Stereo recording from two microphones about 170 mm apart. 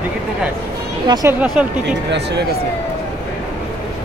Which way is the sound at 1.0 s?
25° right (ahead or behind).